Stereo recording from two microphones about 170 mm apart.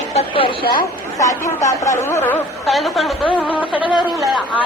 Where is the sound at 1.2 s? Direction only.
20° left (ahead or behind).